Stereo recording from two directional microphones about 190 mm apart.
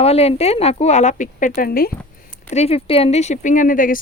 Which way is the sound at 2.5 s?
35° left (ahead or behind).